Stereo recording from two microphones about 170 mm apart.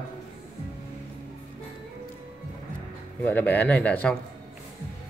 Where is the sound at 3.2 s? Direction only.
10° left (ahead or behind).